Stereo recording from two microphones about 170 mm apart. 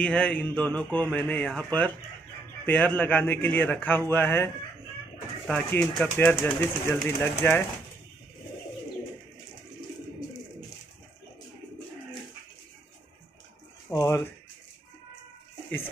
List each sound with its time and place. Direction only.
0.0 s speech: 5° left (ahead or behind)
5.5 s speech: 5° left (ahead or behind)
13.8 s speech: 20° left (ahead or behind)